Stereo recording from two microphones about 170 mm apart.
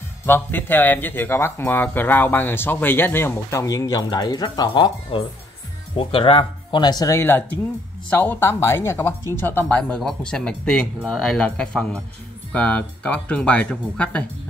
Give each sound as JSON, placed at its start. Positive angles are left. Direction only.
{"t": 0.3, "sound": "speech", "side_deg": 10}